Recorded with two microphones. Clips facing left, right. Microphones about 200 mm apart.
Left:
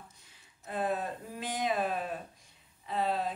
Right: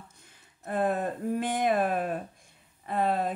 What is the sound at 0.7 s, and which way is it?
Speech, 55° right (ahead or behind).